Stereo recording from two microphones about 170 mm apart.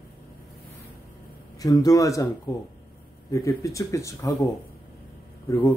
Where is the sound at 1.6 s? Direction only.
20° left (ahead or behind).